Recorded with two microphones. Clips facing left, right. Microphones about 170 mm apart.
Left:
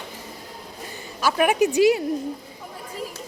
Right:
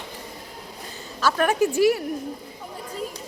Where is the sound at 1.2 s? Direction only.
15° left (ahead or behind).